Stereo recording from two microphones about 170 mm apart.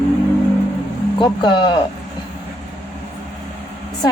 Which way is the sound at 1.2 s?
25° left (ahead or behind).